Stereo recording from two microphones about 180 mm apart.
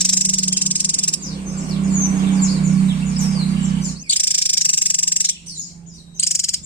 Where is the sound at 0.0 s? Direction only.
5° left (ahead or behind).